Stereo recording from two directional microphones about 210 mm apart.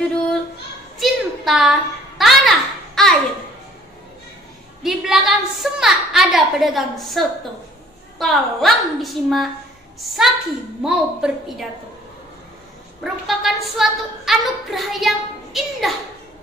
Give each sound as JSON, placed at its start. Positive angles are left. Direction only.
{"t": 0.9, "sound": "a sound", "side_deg": 0}
{"t": 4.8, "sound": "a woman's voice", "side_deg": 0}
{"t": 13.0, "sound": "a woman's voice", "side_deg": 0}